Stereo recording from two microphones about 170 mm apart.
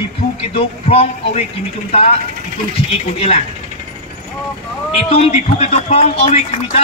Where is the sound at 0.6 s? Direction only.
35° left (ahead or behind).